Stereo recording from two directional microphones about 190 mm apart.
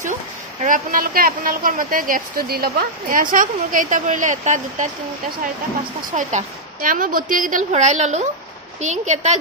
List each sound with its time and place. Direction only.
0.6 s a woman's voice: 45° right (ahead or behind)
6.1 s a woman's voice: 45° right (ahead or behind)